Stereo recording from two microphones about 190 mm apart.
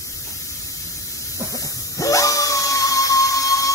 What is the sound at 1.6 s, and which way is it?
Dog, 20° left (ahead or behind).